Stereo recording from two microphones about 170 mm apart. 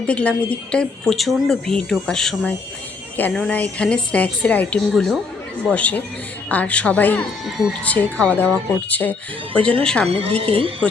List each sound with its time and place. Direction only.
0.1 s a woman's voice: 5° left (ahead or behind)
10.1 s a woman's voice: 35° right (ahead or behind)